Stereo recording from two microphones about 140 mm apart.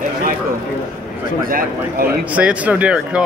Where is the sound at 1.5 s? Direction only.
90° right.